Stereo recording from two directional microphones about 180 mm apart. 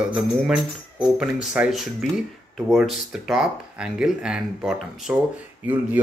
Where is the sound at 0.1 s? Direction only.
5° right (ahead or behind).